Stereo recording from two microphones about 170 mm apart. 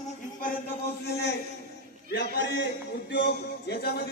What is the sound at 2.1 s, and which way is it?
Speech, 90° left.